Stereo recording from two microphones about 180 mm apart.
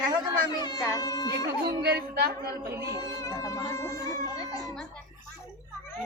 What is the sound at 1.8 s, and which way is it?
Speech, 60° right (ahead or behind).